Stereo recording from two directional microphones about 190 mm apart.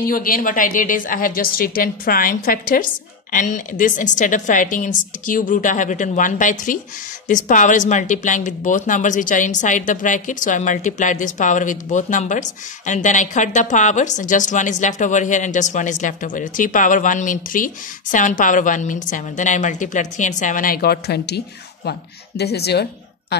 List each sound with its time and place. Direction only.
0.1 s a woman's voice: 50° left (ahead or behind)
22.4 s a woman's voice: 60° left (ahead or behind)